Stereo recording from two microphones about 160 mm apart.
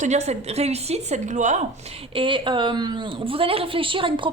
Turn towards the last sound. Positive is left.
turn(degrees=-30)  # may be behind; listen again after turning